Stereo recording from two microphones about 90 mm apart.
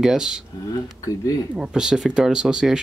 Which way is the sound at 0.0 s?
5° right (ahead or behind).